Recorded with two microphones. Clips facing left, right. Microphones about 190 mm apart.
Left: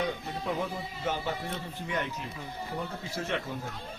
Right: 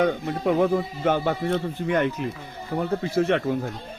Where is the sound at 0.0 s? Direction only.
70° right (ahead or behind).